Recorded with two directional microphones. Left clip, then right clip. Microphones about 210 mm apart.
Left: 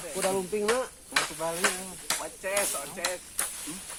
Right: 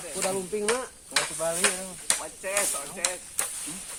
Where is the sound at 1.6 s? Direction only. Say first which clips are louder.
Right 1 dB; 45° right (ahead or behind).